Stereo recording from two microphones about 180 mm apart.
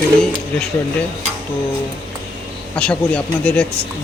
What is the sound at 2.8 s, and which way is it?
Speech, 5° left (ahead or behind).